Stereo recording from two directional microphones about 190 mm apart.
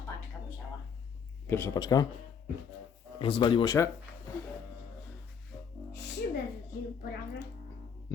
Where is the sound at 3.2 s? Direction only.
30° left (ahead or behind).